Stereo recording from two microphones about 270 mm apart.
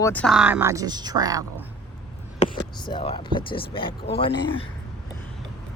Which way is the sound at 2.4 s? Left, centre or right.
Left.